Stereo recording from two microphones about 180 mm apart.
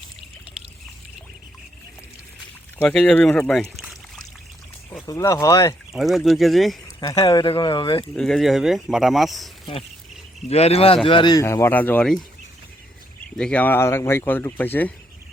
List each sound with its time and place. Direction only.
2.8 s speech: 5° left (ahead or behind)
5.0 s speech: 20° left (ahead or behind)
5.9 s speech: centre (ahead or behind)
7.0 s speech: 20° left (ahead or behind)
7.3 s speech: 30° left (ahead or behind)
8.1 s speech: 5° left (ahead or behind)
10.5 s speech: 35° left (ahead or behind); by 12.2 s 5° left (ahead or behind)
13.3 s speech: 5° left (ahead or behind)